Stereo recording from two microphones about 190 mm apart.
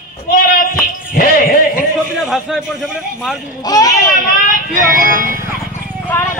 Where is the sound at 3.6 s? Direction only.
20° left (ahead or behind).